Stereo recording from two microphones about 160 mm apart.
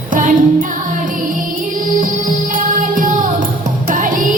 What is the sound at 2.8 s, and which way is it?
Music, 55° right (ahead or behind).